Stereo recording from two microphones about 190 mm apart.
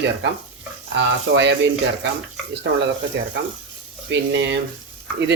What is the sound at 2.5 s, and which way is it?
Speech, 65° right (ahead or behind).